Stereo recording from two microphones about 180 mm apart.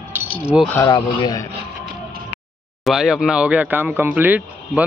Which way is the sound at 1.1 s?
25° left (ahead or behind).